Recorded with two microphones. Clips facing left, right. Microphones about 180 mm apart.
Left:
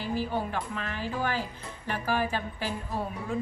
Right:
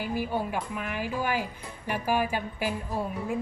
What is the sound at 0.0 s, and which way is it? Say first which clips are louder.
Speech: right 1 dB; 10° right (ahead or behind).